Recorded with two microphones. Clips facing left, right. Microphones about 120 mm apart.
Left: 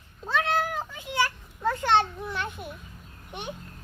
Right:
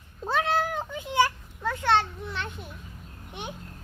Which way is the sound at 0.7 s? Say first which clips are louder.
Right 2 dB; 20° right (ahead or behind).